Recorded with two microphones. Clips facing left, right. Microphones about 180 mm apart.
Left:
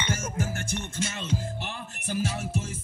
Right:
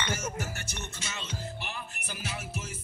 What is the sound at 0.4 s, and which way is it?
Music, 50° left (ahead or behind).